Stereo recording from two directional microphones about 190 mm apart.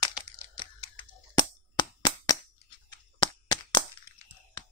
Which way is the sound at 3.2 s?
20° left (ahead or behind).